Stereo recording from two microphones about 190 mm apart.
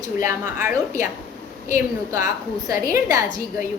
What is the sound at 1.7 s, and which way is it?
Speech, 45° left (ahead or behind).